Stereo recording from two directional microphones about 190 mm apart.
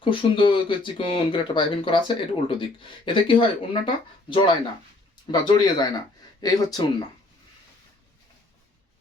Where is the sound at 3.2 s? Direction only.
25° left (ahead or behind).